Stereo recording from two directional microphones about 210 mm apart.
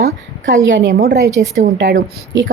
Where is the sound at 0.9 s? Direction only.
45° right (ahead or behind).